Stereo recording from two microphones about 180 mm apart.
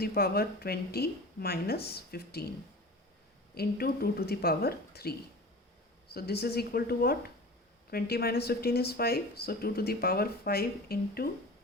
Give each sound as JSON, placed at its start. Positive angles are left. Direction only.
{"t": 0.0, "sound": "speech", "side_deg": 60}
{"t": 3.5, "sound": "speech", "side_deg": 60}
{"t": 6.1, "sound": "speech", "side_deg": 60}